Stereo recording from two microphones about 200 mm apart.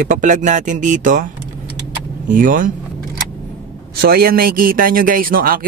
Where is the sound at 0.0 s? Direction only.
40° right (ahead or behind).